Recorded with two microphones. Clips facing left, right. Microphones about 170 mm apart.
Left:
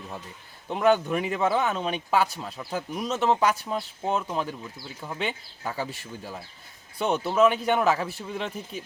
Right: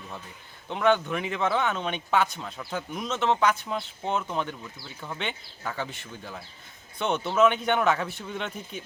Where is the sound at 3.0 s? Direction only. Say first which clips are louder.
Left 1 dB; 35° left (ahead or behind).